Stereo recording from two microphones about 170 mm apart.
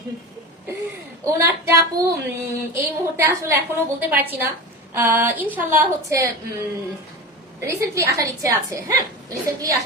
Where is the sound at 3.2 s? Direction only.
15° right (ahead or behind).